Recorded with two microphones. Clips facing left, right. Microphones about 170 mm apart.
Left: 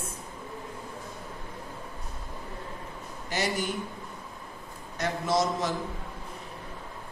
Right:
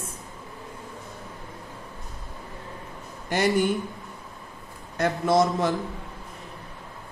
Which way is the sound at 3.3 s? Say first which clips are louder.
Right 8 dB; 55° right (ahead or behind).